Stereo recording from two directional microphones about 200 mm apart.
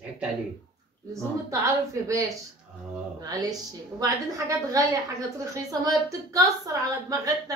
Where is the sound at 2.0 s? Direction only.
15° right (ahead or behind).